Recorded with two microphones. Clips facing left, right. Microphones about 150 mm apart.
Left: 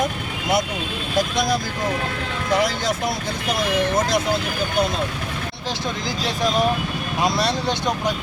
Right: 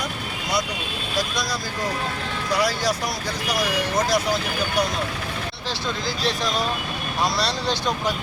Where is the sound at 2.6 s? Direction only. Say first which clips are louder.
Right 1 dB; 20° left (ahead or behind).